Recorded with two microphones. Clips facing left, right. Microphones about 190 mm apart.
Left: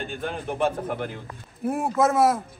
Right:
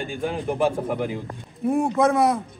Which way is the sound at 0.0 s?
Centre (ahead or behind).